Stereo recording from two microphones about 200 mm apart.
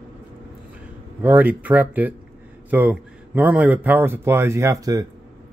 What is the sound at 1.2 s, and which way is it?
Speech, 10° right (ahead or behind).